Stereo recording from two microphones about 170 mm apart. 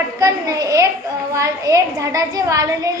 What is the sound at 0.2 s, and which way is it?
A woman's voice, 20° right (ahead or behind).